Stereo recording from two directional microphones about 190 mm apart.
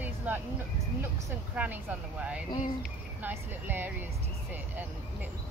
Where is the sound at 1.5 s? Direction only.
5° right (ahead or behind).